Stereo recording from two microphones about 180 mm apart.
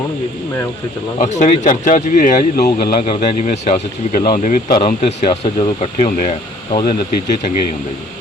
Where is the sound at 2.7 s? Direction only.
30° left (ahead or behind).